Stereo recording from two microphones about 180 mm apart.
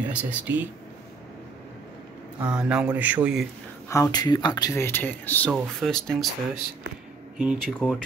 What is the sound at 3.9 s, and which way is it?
Speech, 20° left (ahead or behind).